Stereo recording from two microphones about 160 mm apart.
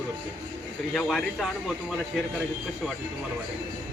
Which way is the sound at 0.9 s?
Centre (ahead or behind).